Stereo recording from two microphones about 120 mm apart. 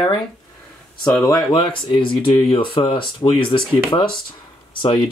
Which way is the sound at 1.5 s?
45° left (ahead or behind).